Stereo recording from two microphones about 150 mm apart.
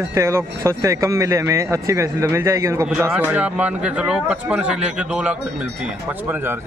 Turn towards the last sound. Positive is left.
turn(degrees=-15)  # may be behind; listen again after turning